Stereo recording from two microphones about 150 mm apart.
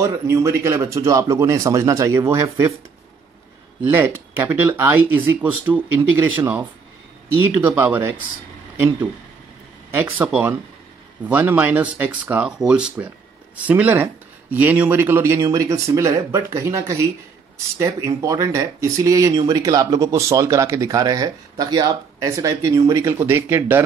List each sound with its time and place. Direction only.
0.0 s speech: 20° right (ahead or behind)
3.9 s speech: 15° right (ahead or behind)
7.3 s speech: 15° right (ahead or behind)